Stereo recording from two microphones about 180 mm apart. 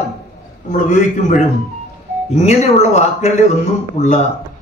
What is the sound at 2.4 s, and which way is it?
Speech, 35° left (ahead or behind).